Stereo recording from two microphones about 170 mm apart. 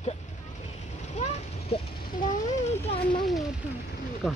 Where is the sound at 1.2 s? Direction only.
40° left (ahead or behind).